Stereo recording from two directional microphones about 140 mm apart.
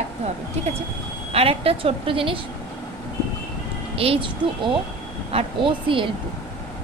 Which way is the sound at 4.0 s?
40° right (ahead or behind).